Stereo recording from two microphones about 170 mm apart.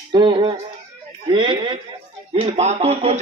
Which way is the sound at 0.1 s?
30° right (ahead or behind).